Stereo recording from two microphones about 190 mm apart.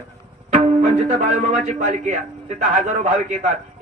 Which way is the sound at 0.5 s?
40° right (ahead or behind).